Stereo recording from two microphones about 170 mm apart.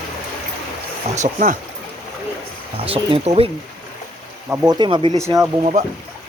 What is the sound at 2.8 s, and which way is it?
Speech, 35° right (ahead or behind).